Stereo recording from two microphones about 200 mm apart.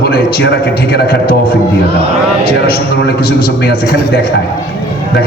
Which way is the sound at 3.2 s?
50° left (ahead or behind).